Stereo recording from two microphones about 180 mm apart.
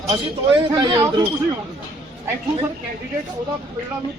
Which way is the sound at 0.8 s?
25° right (ahead or behind).